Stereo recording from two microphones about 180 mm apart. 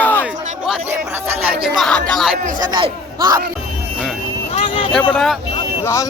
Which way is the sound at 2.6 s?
25° right (ahead or behind).